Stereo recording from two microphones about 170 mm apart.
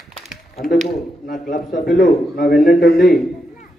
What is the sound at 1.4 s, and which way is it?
A man's voice, 55° left (ahead or behind).